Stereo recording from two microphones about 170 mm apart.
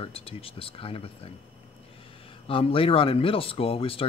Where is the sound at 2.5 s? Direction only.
35° left (ahead or behind).